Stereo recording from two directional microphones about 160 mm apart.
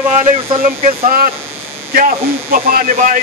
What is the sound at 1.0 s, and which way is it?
Speech, 60° right (ahead or behind).